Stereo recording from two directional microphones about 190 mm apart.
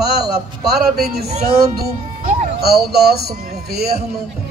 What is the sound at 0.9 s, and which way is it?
Speech, 55° right (ahead or behind).